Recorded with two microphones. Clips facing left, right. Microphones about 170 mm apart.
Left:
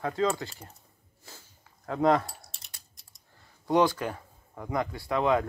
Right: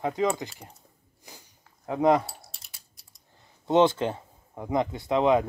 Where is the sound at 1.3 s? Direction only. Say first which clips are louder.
Right 1 dB; 15° right (ahead or behind).